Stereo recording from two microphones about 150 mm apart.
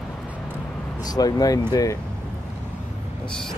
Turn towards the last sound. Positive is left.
turn(degrees=5)  # may be behind; listen again after turning